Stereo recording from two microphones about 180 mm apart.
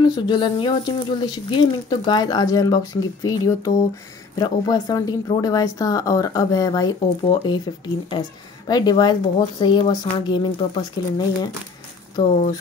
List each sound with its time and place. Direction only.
0.1 s speech: 25° left (ahead or behind)